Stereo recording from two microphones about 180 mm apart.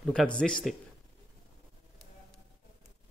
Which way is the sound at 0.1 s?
5° left (ahead or behind).